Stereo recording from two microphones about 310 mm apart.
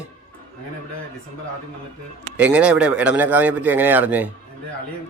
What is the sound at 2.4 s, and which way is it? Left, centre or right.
A man's voice, centre.